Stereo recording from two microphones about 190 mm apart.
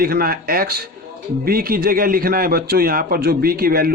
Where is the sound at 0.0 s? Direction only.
50° right (ahead or behind).